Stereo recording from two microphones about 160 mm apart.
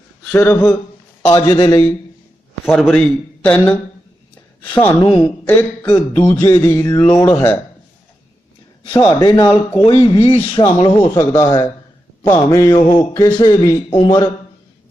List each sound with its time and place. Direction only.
0.3 s speech: 10° left (ahead or behind)
1.3 s speech: 25° left (ahead or behind)
2.6 s a man's voice: centre (ahead or behind)
4.7 s speech: 10° left (ahead or behind)
4.9 s a man's voice: 30° left (ahead or behind)
5.5 s speech: 10° left (ahead or behind)
5.9 s a man's voice: 40° left (ahead or behind)
6.4 s speech: 15° left (ahead or behind)
9.0 s a man's voice: 30° left (ahead or behind)
11.0 s a man's voice: 20° left (ahead or behind)